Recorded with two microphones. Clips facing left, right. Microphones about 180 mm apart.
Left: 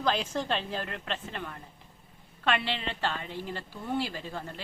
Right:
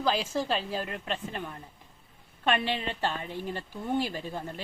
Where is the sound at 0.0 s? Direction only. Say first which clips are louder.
Right 1 dB; 5° right (ahead or behind).